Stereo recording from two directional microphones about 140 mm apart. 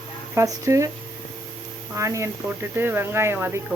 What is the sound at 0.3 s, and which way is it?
Stir, 20° right (ahead or behind).